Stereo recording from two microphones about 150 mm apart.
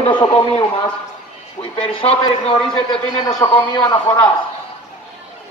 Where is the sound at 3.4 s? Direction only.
30° left (ahead or behind).